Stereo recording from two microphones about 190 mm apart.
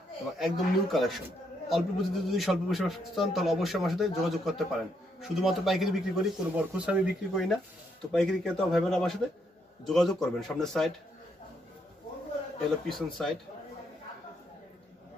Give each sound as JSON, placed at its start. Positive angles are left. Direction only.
{"t": 0.4, "sound": "a man's voice", "side_deg": 0}
{"t": 12.8, "sound": "a man's voice", "side_deg": 0}